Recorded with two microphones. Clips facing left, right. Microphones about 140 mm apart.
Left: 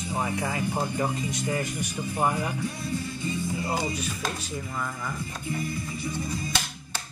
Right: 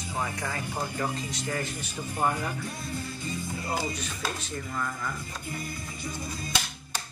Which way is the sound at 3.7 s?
5° left (ahead or behind).